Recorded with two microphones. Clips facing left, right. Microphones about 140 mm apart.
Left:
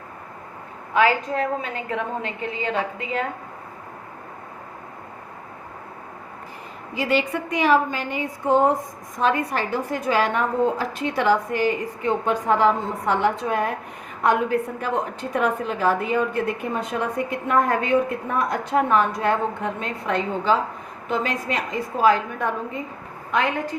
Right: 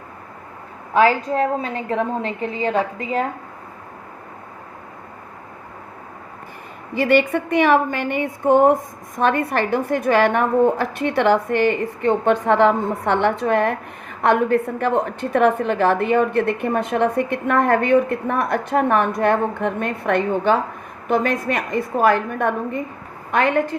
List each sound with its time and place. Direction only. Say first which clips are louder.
0.9 s a woman's voice: right 4 dB; 35° right (ahead or behind)
6.9 s a woman's voice: right 6 dB; 60° right (ahead or behind)